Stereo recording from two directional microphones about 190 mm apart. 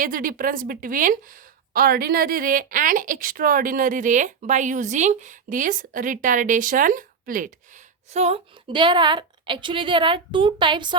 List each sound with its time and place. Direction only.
0.0 s a woman's voice: 45° right (ahead or behind)
8.1 s a woman's voice: 35° right (ahead or behind)